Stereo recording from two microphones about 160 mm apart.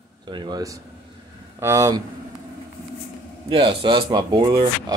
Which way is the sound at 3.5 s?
30° right (ahead or behind).